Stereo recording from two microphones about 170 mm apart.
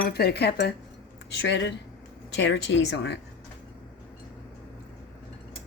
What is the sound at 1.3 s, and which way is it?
A woman's voice, 90° left.